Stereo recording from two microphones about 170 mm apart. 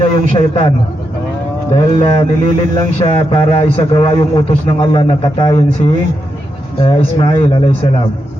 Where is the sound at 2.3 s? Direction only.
45° left (ahead or behind).